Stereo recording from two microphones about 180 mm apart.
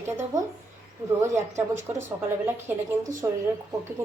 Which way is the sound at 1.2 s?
15° right (ahead or behind).